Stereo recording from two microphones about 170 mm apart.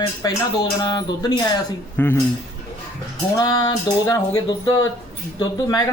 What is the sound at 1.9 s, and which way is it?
Speech, 15° left (ahead or behind).